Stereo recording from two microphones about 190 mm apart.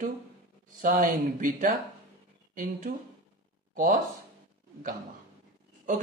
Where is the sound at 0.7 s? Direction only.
45° right (ahead or behind).